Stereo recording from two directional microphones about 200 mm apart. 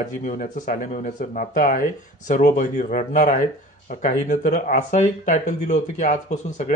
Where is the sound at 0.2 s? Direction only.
40° left (ahead or behind).